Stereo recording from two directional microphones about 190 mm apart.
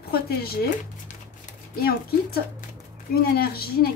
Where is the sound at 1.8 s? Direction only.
55° left (ahead or behind).